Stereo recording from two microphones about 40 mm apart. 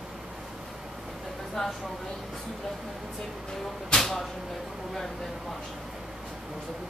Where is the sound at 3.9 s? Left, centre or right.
Centre.